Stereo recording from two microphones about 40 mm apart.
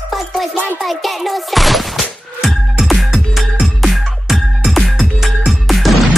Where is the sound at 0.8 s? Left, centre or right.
Centre.